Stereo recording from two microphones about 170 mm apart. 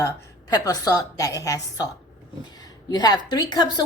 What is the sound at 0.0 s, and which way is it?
A woman's voice, 20° left (ahead or behind).